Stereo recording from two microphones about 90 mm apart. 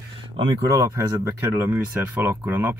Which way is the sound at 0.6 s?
35° right (ahead or behind).